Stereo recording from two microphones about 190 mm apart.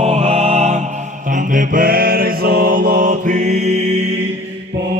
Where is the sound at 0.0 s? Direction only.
35° right (ahead or behind).